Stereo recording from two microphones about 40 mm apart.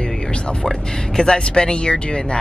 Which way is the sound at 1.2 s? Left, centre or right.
Left.